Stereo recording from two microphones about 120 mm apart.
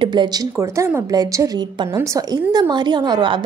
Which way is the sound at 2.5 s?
35° right (ahead or behind).